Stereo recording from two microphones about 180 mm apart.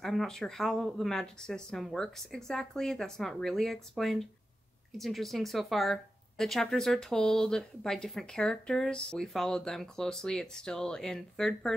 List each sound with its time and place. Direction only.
0.0 s speech: centre (ahead or behind)